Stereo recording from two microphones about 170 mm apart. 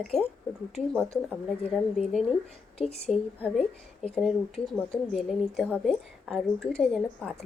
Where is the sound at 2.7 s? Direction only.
35° left (ahead or behind).